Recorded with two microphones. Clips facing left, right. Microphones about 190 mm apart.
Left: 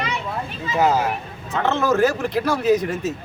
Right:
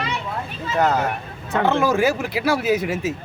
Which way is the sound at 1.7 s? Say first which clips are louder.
Left 1 dB; 10° right (ahead or behind).